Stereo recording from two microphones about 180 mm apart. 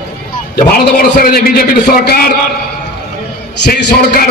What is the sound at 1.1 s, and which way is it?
A man's voice, 55° left (ahead or behind).